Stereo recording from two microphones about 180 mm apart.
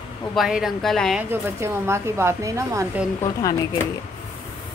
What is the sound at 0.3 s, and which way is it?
Speech, centre (ahead or behind).